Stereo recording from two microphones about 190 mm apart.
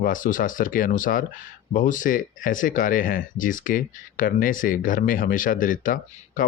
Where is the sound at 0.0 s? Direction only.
45° left (ahead or behind).